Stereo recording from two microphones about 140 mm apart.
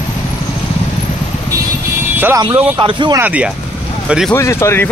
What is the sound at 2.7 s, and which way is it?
Speech, 35° right (ahead or behind).